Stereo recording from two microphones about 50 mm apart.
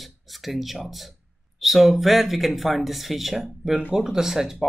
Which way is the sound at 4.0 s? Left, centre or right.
Centre.